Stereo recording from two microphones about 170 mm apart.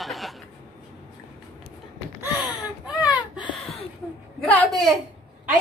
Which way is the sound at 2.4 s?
5° right (ahead or behind).